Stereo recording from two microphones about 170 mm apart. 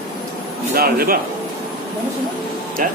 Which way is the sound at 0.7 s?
60° right (ahead or behind).